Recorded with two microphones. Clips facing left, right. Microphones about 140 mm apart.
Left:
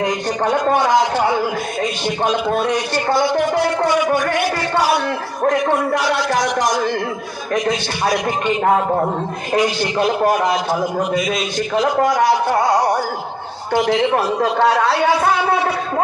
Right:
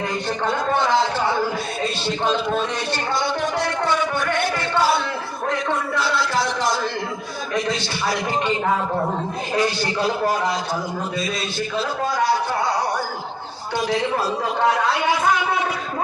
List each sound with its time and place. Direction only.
0.0 s a man's voice: 15° left (ahead or behind)
5.5 s a man's voice: 65° left (ahead or behind)
6.4 s a man's voice: 15° left (ahead or behind)
9.6 s a man's voice: 15° left (ahead or behind)
10.4 s a man's voice: 65° left (ahead or behind)
12.5 s music: 45° left (ahead or behind)
14.0 s a man's voice: 80° left
15.2 s speech: 65° left (ahead or behind)